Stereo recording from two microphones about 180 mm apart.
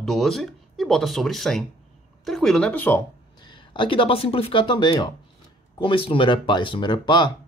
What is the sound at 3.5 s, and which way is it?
Speech, 30° left (ahead or behind).